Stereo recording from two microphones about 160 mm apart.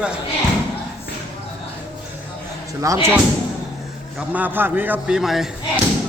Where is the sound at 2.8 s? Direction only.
20° right (ahead or behind).